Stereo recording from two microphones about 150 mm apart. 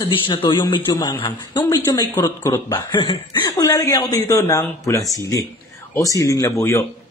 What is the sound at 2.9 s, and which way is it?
Speech, 30° left (ahead or behind).